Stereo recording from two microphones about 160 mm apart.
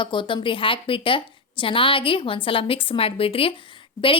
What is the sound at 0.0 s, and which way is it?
A woman's voice, 30° left (ahead or behind).